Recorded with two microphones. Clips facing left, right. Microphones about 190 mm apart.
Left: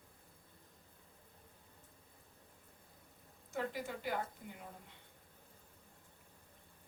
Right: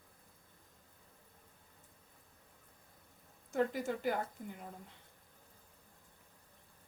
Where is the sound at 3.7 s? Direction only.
45° right (ahead or behind).